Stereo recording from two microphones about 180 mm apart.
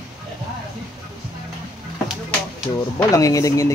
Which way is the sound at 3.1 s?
20° left (ahead or behind).